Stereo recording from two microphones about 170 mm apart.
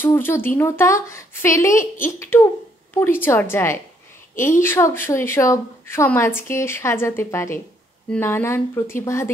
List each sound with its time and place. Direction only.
0.0 s speech: 15° left (ahead or behind)